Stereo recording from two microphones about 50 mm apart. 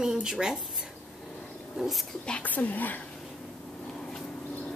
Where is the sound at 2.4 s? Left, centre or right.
Left.